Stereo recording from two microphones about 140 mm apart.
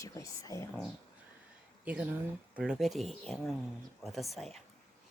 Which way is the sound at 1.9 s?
10° right (ahead or behind).